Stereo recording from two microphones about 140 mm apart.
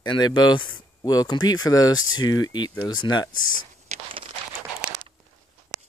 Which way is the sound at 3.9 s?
55° right (ahead or behind).